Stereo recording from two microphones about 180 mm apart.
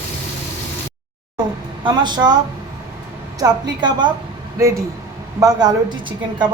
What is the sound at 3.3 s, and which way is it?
A woman's voice, 20° right (ahead or behind).